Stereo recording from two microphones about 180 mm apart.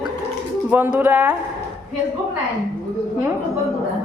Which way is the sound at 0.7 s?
10° right (ahead or behind).